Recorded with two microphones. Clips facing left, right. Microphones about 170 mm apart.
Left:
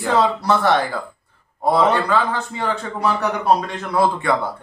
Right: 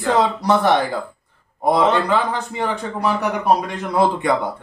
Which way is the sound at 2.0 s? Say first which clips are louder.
Even; 15° right (ahead or behind).